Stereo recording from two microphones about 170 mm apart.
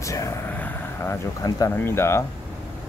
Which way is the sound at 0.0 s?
20° left (ahead or behind).